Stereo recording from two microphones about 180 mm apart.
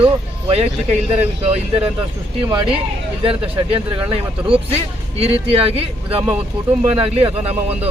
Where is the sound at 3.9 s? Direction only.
30° right (ahead or behind).